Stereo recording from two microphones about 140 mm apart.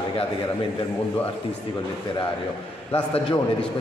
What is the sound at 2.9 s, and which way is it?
Speech, 45° left (ahead or behind).